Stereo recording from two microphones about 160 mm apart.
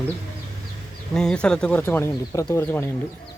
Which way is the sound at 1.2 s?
5° left (ahead or behind).